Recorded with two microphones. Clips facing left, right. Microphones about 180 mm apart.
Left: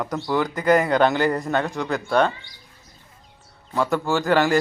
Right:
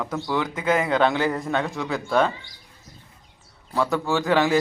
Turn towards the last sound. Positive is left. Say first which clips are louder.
# left 1 dB
turn(degrees=0)  # may be behind; listen again after turning